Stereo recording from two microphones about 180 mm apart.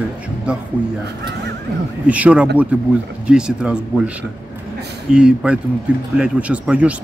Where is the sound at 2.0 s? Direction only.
5° right (ahead or behind).